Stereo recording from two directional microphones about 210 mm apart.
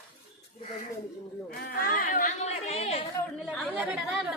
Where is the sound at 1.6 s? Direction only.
40° left (ahead or behind).